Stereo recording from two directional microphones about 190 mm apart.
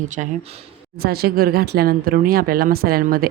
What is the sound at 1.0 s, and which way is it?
Speech, 55° right (ahead or behind).